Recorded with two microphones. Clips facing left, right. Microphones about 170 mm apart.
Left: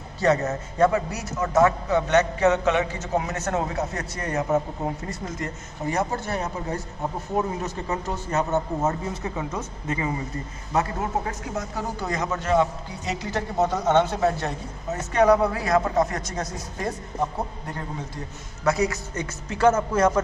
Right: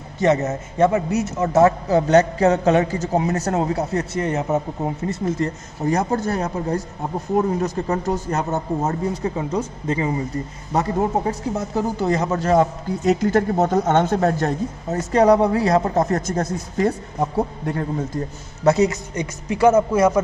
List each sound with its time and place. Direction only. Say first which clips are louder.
0.2 s a man's voice: right 3 dB; 20° right (ahead or behind)
5.9 s a man's voice: right 6 dB; 40° right (ahead or behind)
8.4 s a man's voice: right 1 dB; 35° right (ahead or behind); by 16.5 s 50° right (ahead or behind)
17.6 s speech: right 9 dB; 55° right (ahead or behind)
18.6 s a man's voice: right 6 dB; 25° right (ahead or behind)